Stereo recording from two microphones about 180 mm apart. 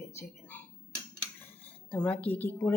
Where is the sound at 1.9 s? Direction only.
5° left (ahead or behind).